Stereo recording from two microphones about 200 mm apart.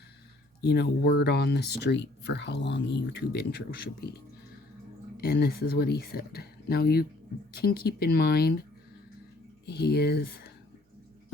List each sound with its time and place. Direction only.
0.6 s speech: 55° left (ahead or behind)
5.1 s speech: 50° left (ahead or behind)
9.6 s speech: 50° left (ahead or behind)